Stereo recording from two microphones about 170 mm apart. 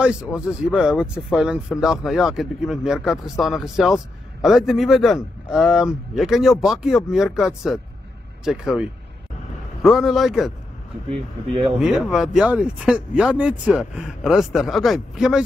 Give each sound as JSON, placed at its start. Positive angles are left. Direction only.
{"t": 0.0, "sound": "speech", "side_deg": -5}
{"t": 11.1, "sound": "speech", "side_deg": -35}
{"t": 11.8, "sound": "speech", "side_deg": -5}